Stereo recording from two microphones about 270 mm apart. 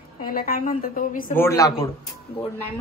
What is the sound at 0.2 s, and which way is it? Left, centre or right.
A woman's voice, left.